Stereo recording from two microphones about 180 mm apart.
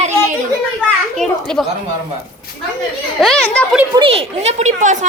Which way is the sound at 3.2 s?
Centre (ahead or behind).